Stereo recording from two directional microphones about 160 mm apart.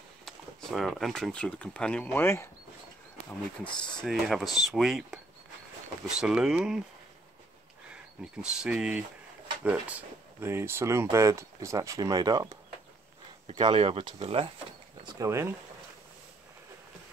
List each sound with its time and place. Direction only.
0.2 s speech: centre (ahead or behind)
3.6 s speech: 30° left (ahead or behind)
4.0 s speech: centre (ahead or behind)
7.9 s speech: 5° right (ahead or behind); by 12.5 s 25° right (ahead or behind)
13.6 s speech: 35° right (ahead or behind)
15.0 s speech: 20° right (ahead or behind)